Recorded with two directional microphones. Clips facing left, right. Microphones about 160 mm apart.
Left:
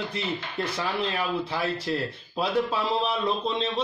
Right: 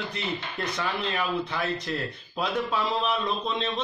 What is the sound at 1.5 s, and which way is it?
A man's voice, 30° left (ahead or behind).